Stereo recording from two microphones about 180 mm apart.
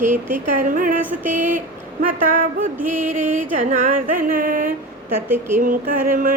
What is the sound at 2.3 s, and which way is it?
A woman's voice, 50° right (ahead or behind).